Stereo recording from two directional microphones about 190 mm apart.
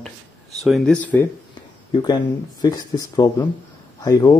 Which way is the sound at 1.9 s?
20° left (ahead or behind).